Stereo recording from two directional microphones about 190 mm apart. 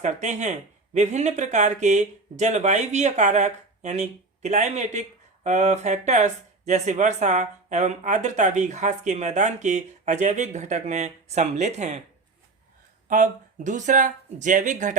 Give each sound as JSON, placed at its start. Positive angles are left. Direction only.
{"t": 0.0, "sound": "speech", "side_deg": -40}
{"t": 13.1, "sound": "speech", "side_deg": -40}